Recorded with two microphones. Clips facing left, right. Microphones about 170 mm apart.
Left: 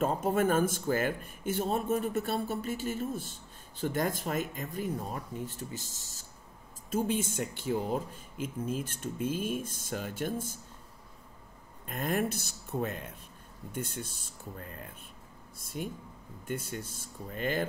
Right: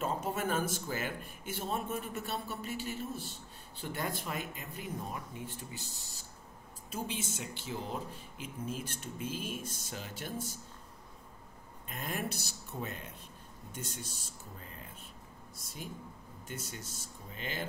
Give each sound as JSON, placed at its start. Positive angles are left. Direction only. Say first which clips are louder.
{"t": 0.0, "sound": "speech", "louder": "left 7 dB", "side_deg": 50}
{"t": 11.9, "sound": "speech", "louder": "left 7 dB", "side_deg": 50}
{"t": 15.6, "sound": "speech", "louder": "left 7 dB", "side_deg": 55}